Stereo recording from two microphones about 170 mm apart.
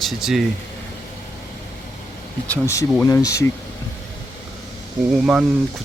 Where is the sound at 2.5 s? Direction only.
15° left (ahead or behind).